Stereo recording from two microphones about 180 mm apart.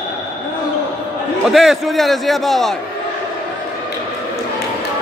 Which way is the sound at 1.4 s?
Centre (ahead or behind).